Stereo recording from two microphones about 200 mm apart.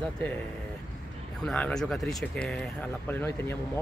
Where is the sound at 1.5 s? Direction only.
5° left (ahead or behind).